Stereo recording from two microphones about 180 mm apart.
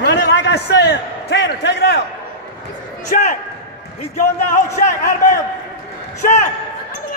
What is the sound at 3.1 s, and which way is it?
Speech, 45° left (ahead or behind).